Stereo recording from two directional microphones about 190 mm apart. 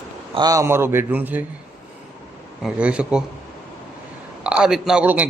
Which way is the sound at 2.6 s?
5° right (ahead or behind).